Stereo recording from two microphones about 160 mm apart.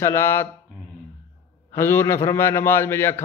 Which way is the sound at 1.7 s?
15° left (ahead or behind).